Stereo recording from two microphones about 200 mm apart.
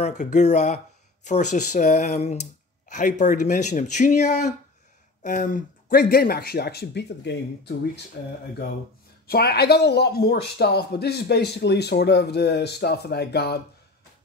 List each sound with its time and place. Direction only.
0.0 s speech: 35° left (ahead or behind); by 8.0 s 60° left (ahead or behind)
9.3 s speech: 55° left (ahead or behind)